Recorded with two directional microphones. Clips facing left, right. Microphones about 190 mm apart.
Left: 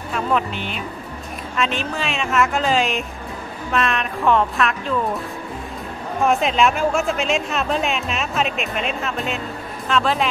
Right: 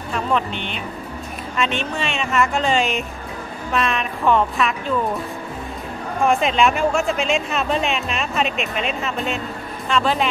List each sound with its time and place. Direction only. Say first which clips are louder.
0.1 s speech: even; 5° left (ahead or behind)
6.2 s speech: even; centre (ahead or behind)